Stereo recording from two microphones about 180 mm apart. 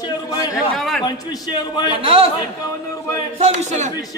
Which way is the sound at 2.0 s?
30° right (ahead or behind).